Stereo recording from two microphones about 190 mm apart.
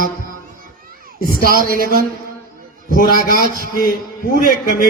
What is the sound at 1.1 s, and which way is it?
A man's voice, 50° left (ahead or behind).